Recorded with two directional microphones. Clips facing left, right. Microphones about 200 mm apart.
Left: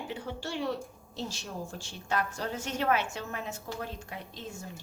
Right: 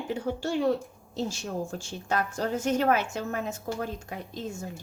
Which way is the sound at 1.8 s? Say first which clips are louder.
Right 3 dB; 45° right (ahead or behind).